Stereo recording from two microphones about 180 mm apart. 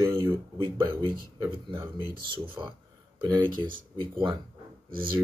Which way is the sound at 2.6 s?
25° right (ahead or behind).